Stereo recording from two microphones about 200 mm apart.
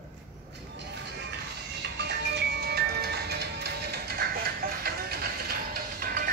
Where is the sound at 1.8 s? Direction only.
60° right (ahead or behind).